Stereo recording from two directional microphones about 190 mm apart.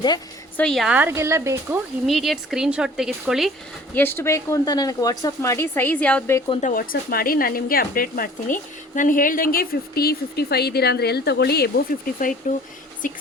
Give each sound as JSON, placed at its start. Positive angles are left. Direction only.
{"t": 0.5, "sound": "speech", "side_deg": 5}
{"t": 2.0, "sound": "speech", "side_deg": 0}
{"t": 3.9, "sound": "speech", "side_deg": 10}
{"t": 6.5, "sound": "speech", "side_deg": 40}
{"t": 12.4, "sound": "speech", "side_deg": 40}